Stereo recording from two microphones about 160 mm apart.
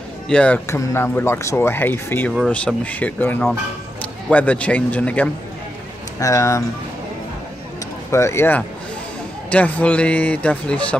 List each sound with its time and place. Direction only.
0.3 s speech: 10° left (ahead or behind)
6.1 s speech: 20° left (ahead or behind)
8.1 s speech: 15° left (ahead or behind)